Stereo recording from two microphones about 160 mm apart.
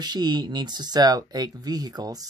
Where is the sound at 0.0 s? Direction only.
25° right (ahead or behind).